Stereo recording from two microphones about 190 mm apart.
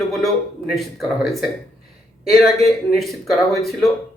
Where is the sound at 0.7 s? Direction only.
Centre (ahead or behind).